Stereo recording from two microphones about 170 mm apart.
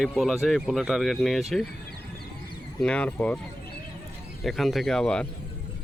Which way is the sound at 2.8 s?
5° left (ahead or behind).